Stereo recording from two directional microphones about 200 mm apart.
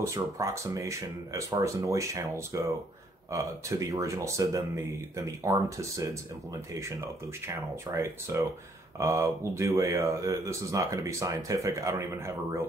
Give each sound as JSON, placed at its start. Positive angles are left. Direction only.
{"t": 0.0, "sound": "speech", "side_deg": -15}